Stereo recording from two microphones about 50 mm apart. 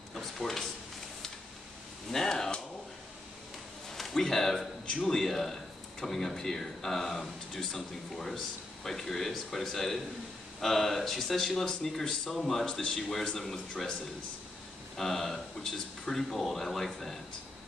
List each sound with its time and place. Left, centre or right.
0.1 s a sound: centre
2.0 s a sound: centre
3.9 s speech: centre
4.8 s speech: centre
5.1 s a man's voice: centre
15.0 s a man's voice: centre